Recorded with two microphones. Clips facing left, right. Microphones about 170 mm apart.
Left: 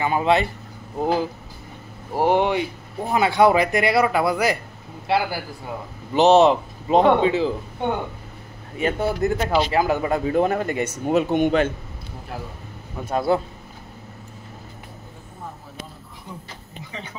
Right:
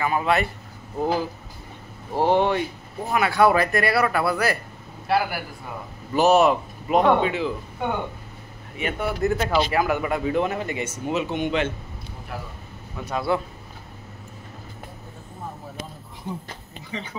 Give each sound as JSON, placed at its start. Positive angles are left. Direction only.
{"t": 0.0, "sound": "a man's voice", "side_deg": 25}
{"t": 8.7, "sound": "speech", "side_deg": 35}
{"t": 9.2, "sound": "speech", "side_deg": 20}
{"t": 13.0, "sound": "speech", "side_deg": 45}